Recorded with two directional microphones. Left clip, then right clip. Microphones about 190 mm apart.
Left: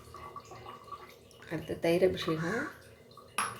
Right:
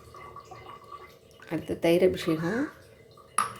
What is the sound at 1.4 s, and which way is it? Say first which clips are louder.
Speech: right 5 dB; 35° right (ahead or behind).